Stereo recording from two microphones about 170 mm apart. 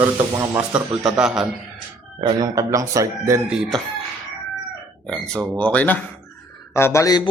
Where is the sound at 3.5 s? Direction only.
Centre (ahead or behind).